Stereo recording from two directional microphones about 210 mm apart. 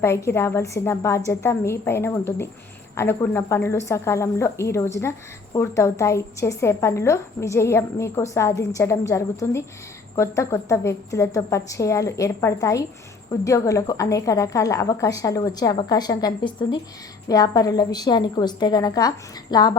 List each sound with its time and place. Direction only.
0.0 s a woman's voice: 10° left (ahead or behind)